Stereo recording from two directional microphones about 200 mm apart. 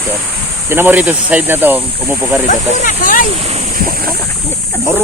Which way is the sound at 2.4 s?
40° left (ahead or behind).